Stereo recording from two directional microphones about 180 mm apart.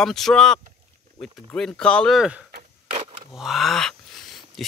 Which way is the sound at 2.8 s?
35° right (ahead or behind).